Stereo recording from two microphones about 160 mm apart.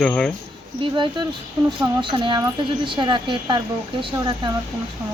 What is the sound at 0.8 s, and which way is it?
Speech, 30° right (ahead or behind).